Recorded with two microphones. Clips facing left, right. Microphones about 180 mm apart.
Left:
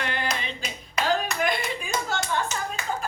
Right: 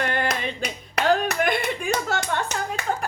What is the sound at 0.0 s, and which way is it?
Clapping, 50° right (ahead or behind).